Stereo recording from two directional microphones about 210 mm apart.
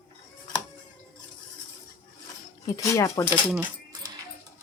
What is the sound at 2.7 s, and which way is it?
Speech, 15° left (ahead or behind).